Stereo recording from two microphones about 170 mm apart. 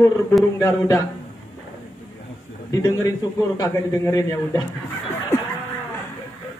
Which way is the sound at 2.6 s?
20° left (ahead or behind).